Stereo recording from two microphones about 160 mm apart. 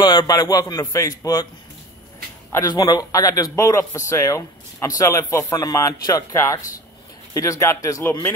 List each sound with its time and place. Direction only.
0.0 s a man's voice: 25° left (ahead or behind)
2.5 s a man's voice: 25° left (ahead or behind)